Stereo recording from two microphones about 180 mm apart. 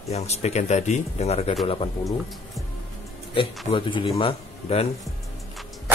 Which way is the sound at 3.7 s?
30° left (ahead or behind).